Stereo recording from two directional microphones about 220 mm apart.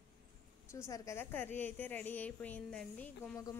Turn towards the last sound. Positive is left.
turn(degrees=15)  # may be behind; listen again after turning